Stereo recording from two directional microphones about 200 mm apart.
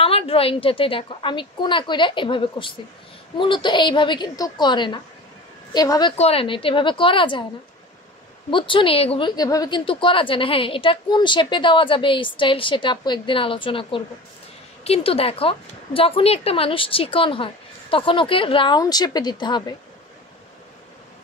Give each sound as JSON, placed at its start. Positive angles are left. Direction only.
{"t": 0.0, "sound": "a woman's voice", "side_deg": 30}
{"t": 6.1, "sound": "a woman's voice", "side_deg": 30}
{"t": 8.5, "sound": "a woman's voice", "side_deg": 25}